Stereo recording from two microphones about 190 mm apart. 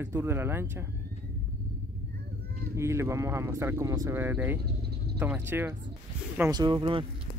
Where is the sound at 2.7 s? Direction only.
15° right (ahead or behind).